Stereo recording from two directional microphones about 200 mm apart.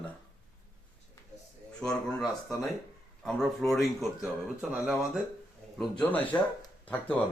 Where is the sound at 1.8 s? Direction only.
Centre (ahead or behind).